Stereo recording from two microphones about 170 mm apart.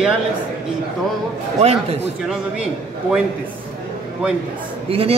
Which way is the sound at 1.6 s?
35° right (ahead or behind).